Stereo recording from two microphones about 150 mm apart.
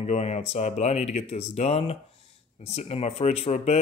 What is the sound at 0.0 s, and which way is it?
Speech, 50° left (ahead or behind).